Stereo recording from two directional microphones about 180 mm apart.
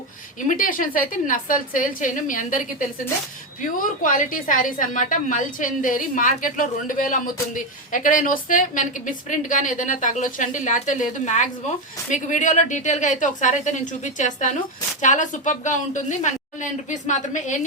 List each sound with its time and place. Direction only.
0.3 s speech: 45° left (ahead or behind)